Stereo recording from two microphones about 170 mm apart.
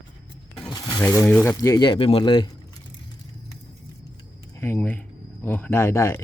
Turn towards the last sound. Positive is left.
turn(degrees=15)  # may be behind; listen again after turning